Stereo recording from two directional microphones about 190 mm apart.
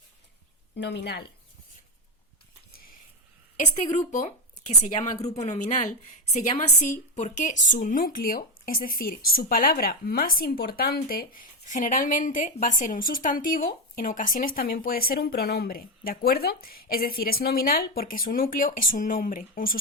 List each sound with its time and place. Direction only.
0.8 s a woman's voice: 65° left (ahead or behind)
3.6 s a woman's voice: 40° left (ahead or behind)